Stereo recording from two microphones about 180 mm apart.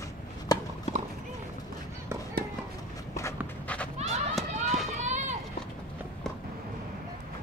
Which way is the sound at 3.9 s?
35° right (ahead or behind).